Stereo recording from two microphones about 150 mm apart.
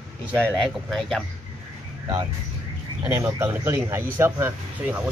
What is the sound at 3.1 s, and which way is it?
Speech, 20° right (ahead or behind).